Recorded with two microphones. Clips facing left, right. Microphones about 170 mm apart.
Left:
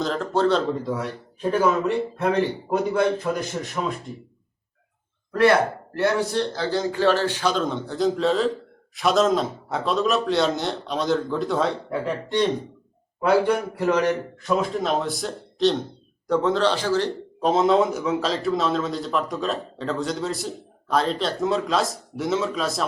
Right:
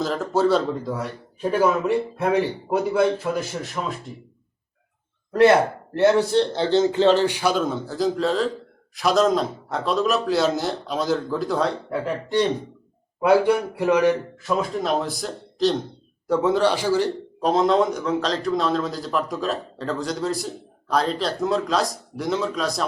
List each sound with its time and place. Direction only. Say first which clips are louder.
0.0 s a man's voice: right 1 dB; 5° right (ahead or behind)
5.3 s a man's voice: right 3 dB; 25° right (ahead or behind)
14.5 s a man's voice: even; centre (ahead or behind)
17.4 s a man's voice: even; centre (ahead or behind)